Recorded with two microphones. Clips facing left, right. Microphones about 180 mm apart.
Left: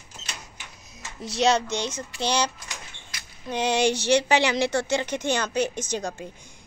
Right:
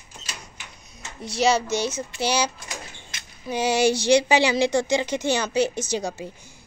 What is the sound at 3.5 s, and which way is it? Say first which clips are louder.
Speech: right 2 dB; 5° right (ahead or behind).